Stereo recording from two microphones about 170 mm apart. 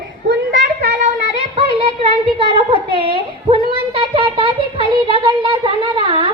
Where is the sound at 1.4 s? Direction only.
35° right (ahead or behind).